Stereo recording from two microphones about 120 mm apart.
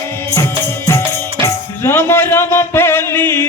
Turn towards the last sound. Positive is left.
turn(degrees=20)  # may be behind; listen again after turning